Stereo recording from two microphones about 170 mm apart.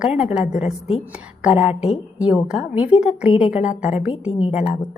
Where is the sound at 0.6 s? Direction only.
40° left (ahead or behind).